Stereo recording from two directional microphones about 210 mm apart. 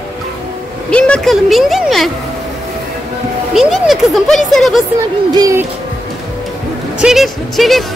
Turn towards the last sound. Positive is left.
turn(degrees=0)  # may be behind; listen again after turning